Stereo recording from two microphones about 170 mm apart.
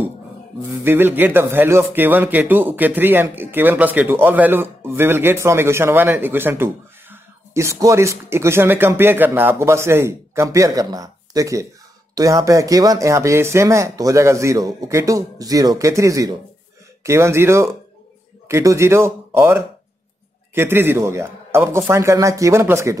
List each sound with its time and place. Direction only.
0.8 s speech: 10° right (ahead or behind)